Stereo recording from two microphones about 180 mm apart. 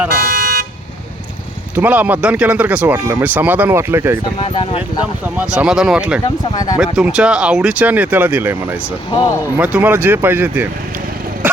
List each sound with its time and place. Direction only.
0.1 s toot: 50° right (ahead or behind)
1.7 s speech: 10° right (ahead or behind)
4.4 s speech: 30° left (ahead or behind)
5.2 s speech: 5° right (ahead or behind)
6.2 s speech: 25° left (ahead or behind)
6.7 s speech: 5° right (ahead or behind)